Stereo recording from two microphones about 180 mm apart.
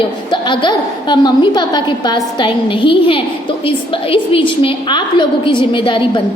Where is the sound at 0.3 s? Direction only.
25° left (ahead or behind).